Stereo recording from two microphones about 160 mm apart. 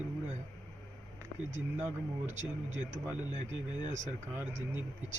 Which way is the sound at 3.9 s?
50° right (ahead or behind).